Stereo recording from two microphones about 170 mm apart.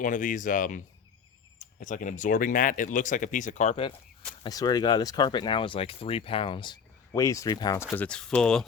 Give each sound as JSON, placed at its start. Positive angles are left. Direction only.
{"t": 0.0, "sound": "speech", "side_deg": 50}
{"t": 4.4, "sound": "speech", "side_deg": 20}